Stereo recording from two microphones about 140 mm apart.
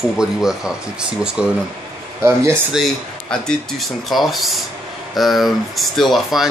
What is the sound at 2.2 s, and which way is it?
Speech, 20° right (ahead or behind).